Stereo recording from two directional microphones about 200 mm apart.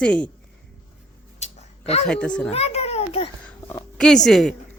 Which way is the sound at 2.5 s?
30° left (ahead or behind).